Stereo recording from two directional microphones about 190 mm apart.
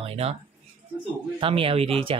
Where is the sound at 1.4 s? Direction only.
30° right (ahead or behind).